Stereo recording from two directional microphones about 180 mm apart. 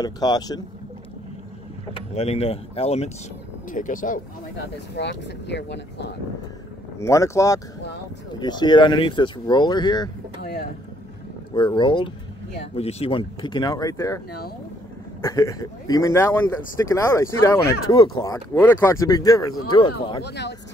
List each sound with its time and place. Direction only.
0.0 s speech: 20° left (ahead or behind)
2.0 s speech: 35° left (ahead or behind)
3.7 s speech: 45° left (ahead or behind)
4.9 s speech: 75° left (ahead or behind)
7.0 s speech: 15° left (ahead or behind)
11.5 s speech: 25° left (ahead or behind)
15.2 s speech: 20° left (ahead or behind)
20.2 s speech: 70° left (ahead or behind)